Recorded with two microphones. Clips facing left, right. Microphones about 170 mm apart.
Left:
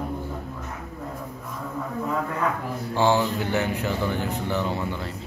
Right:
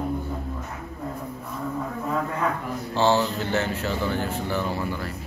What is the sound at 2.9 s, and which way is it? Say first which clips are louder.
Speech: even; 15° left (ahead or behind).